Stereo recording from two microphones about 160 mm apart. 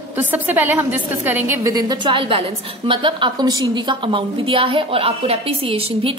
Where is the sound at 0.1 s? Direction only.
10° right (ahead or behind).